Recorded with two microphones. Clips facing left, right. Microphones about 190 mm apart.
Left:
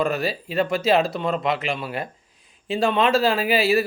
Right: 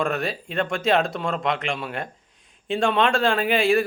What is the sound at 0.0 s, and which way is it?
A man's voice, centre (ahead or behind).